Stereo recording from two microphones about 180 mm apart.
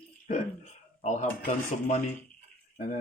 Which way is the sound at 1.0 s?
40° left (ahead or behind).